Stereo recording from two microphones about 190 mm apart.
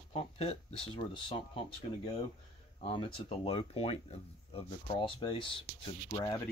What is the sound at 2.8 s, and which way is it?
Speech, 30° left (ahead or behind).